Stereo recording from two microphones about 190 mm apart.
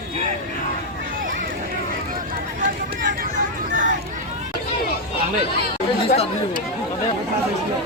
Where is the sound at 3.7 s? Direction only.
45° right (ahead or behind).